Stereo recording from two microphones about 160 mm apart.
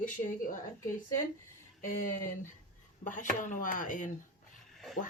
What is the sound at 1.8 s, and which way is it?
Speech, 55° left (ahead or behind).